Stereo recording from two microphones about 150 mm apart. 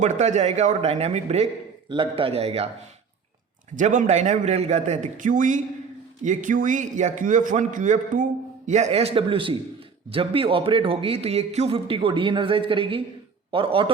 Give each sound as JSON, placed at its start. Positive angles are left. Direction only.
{"t": 0.0, "sound": "a man's voice", "side_deg": -55}
{"t": 1.9, "sound": "a man's voice", "side_deg": -35}
{"t": 3.8, "sound": "a man's voice", "side_deg": -55}